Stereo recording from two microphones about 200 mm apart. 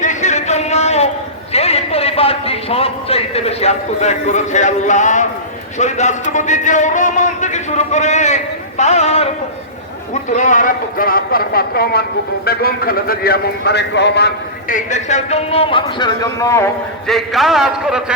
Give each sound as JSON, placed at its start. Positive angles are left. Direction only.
{"t": 0.0, "sound": "a sound", "side_deg": 35}
{"t": 1.5, "sound": "a man's voice", "side_deg": 30}
{"t": 14.7, "sound": "speech", "side_deg": 40}
{"t": 17.1, "sound": "a man's voice", "side_deg": 0}